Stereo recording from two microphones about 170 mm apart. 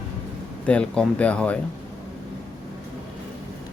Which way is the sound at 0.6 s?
5° left (ahead or behind).